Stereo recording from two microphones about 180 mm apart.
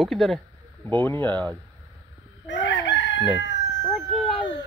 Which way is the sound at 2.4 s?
85° left.